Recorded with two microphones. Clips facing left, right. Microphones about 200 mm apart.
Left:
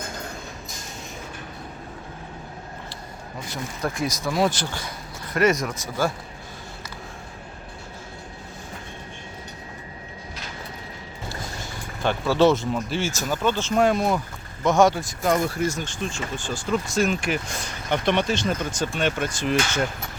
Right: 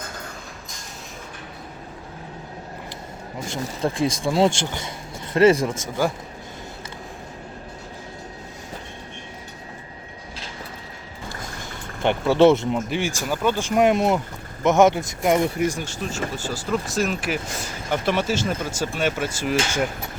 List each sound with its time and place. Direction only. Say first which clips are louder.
3.5 s speech: right 4 dB; 25° right (ahead or behind)
12.0 s speech: right 3 dB; 20° right (ahead or behind)